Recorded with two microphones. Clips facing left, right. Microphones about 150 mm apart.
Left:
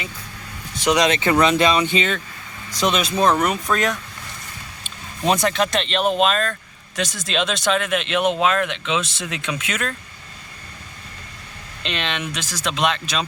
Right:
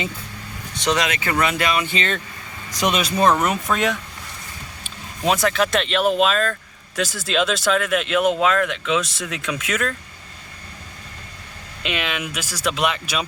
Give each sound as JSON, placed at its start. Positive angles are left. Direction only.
{"t": 1.0, "sound": "speech", "side_deg": 25}
{"t": 2.8, "sound": "speech", "side_deg": -5}
{"t": 5.2, "sound": "speech", "side_deg": -5}
{"t": 11.8, "sound": "speech", "side_deg": -10}